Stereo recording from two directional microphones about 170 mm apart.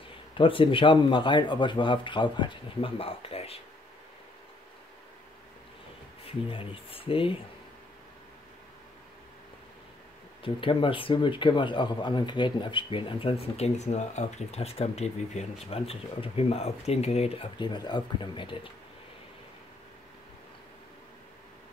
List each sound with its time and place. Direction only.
0.3 s speech: 30° left (ahead or behind)
6.2 s speech: 35° left (ahead or behind)
10.4 s speech: 30° left (ahead or behind)